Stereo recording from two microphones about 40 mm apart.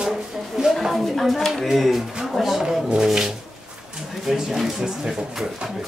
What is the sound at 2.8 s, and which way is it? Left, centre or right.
Speech, centre.